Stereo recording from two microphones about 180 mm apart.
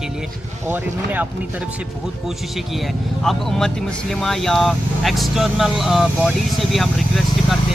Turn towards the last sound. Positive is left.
turn(degrees=0)  # may be behind; listen again after turning